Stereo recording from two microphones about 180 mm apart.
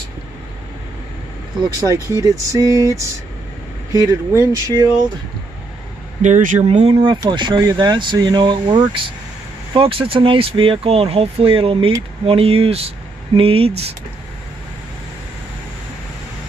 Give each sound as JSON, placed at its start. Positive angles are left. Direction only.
{"t": 1.6, "sound": "speech", "side_deg": -20}
{"t": 2.1, "sound": "a sound", "side_deg": -20}
{"t": 4.1, "sound": "speech", "side_deg": -15}
{"t": 6.2, "sound": "speech", "side_deg": -45}